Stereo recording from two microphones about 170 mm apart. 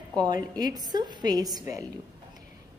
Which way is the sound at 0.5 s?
25° right (ahead or behind).